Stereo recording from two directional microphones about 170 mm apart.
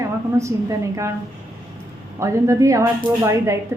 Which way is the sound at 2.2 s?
20° right (ahead or behind).